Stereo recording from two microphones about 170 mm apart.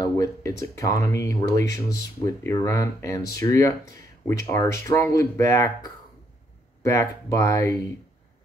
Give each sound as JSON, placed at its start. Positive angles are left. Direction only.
{"t": 0.0, "sound": "speech", "side_deg": 20}
{"t": 6.8, "sound": "speech", "side_deg": 20}